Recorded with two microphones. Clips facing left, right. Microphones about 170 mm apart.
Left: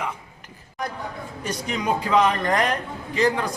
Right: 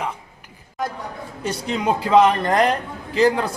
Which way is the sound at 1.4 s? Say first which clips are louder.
Right 3 dB; 30° right (ahead or behind).